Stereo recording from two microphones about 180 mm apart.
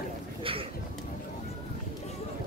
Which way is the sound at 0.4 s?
30° right (ahead or behind).